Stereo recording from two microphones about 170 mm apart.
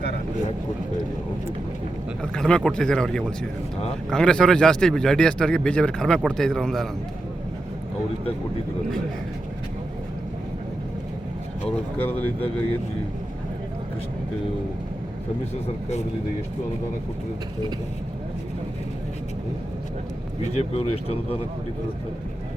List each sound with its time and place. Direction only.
2.2 s speech: 5° left (ahead or behind)
11.6 s speech: 10° left (ahead or behind)
20.4 s speech: 40° left (ahead or behind)